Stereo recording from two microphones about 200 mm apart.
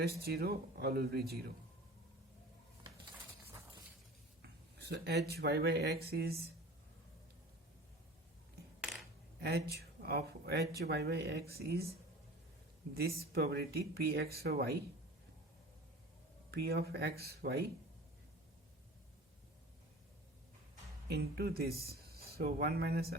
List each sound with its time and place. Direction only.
0.0 s speech: 50° right (ahead or behind)
4.4 s speech: 55° right (ahead or behind)
9.4 s speech: 55° right (ahead or behind)
12.9 s speech: 50° right (ahead or behind)
16.5 s speech: 50° right (ahead or behind)
21.1 s speech: 50° right (ahead or behind)